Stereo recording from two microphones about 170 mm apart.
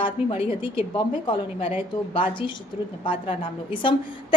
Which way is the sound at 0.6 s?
30° left (ahead or behind).